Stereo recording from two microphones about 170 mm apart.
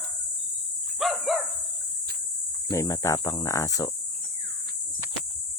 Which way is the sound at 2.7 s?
20° left (ahead or behind).